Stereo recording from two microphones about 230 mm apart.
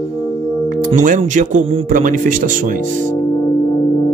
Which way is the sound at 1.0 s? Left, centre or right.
Right.